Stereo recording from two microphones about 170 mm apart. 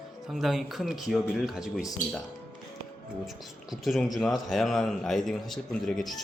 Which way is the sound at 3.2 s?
Centre (ahead or behind).